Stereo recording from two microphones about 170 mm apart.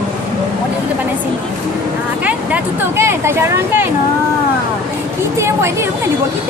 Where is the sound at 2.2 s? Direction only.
10° right (ahead or behind).